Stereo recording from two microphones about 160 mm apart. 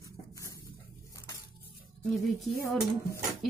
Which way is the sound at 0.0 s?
20° left (ahead or behind).